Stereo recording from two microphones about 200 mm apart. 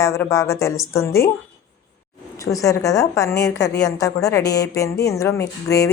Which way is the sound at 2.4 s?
15° left (ahead or behind).